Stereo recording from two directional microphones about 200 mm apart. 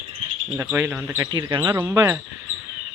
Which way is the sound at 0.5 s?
10° right (ahead or behind).